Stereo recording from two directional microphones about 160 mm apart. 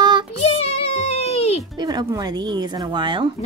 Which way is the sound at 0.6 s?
40° left (ahead or behind).